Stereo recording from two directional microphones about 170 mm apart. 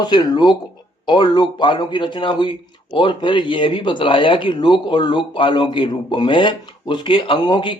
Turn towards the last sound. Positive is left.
turn(degrees=25)  # may be behind; listen again after turning